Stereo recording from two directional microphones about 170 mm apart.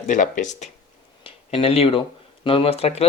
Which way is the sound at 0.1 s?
50° left (ahead or behind).